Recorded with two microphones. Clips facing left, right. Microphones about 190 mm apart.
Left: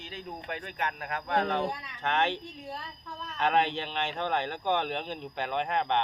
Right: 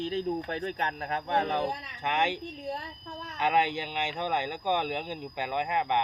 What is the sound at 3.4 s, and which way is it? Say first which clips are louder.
Speech: even; 10° right (ahead or behind).